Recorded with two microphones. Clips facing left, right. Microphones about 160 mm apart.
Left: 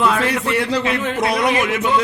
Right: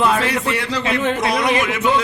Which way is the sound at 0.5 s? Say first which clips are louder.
Left 2 dB; 55° left (ahead or behind).